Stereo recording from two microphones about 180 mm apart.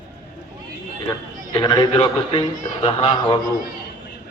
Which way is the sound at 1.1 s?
25° left (ahead or behind).